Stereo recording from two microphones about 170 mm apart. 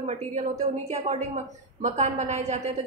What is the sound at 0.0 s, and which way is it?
A woman's voice, 45° right (ahead or behind).